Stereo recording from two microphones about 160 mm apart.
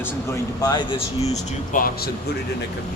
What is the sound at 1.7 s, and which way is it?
Speech, 60° left (ahead or behind).